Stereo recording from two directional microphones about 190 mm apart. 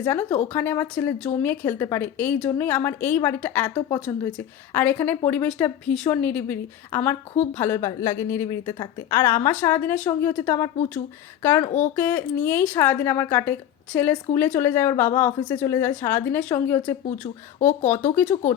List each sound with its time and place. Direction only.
0.0 s speech: 10° left (ahead or behind)
3.8 s a woman's voice: 20° left (ahead or behind)
4.0 s speech: 10° left (ahead or behind)
11.9 s speech: 10° left (ahead or behind)